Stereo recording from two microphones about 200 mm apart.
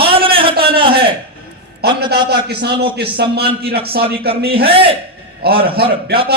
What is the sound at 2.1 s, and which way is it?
Speech, 55° right (ahead or behind).